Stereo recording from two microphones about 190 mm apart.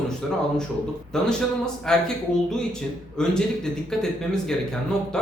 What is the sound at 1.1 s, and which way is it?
Speech, 5° left (ahead or behind).